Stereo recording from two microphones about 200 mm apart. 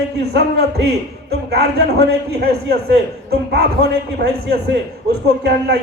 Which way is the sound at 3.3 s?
55° right (ahead or behind).